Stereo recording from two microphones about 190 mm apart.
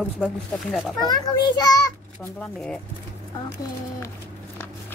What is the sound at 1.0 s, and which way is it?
Speech, 20° left (ahead or behind).